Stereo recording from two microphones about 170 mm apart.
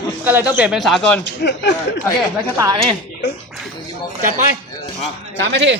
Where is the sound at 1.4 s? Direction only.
85° left.